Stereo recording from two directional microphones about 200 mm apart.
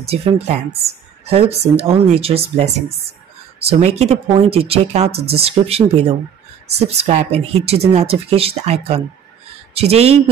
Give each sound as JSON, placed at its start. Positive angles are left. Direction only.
{"t": 0.0, "sound": "speech", "side_deg": -30}
{"t": 5.1, "sound": "speech", "side_deg": -55}
{"t": 5.4, "sound": "speech", "side_deg": -30}